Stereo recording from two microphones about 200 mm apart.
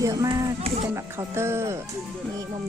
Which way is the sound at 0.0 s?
15° right (ahead or behind).